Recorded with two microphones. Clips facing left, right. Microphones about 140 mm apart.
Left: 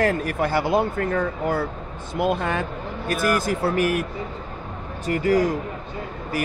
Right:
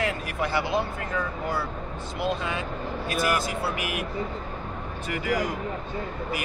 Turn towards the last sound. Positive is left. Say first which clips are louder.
# left 7 dB
turn(degrees=40)  # may be behind; listen again after turning